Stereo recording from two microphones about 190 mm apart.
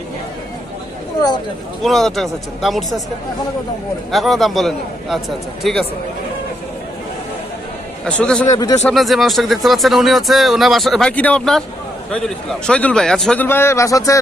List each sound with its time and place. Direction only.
1.8 s speech: centre (ahead or behind)
4.1 s speech: centre (ahead or behind)
8.0 s speech: 5° left (ahead or behind)
8.5 s speech: 20° left (ahead or behind)
8.8 s a man's voice: centre (ahead or behind); by 14.2 s 15° left (ahead or behind)